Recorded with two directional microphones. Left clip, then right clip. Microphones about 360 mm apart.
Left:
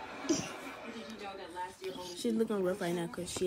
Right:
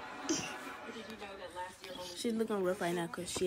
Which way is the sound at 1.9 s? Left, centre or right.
Centre.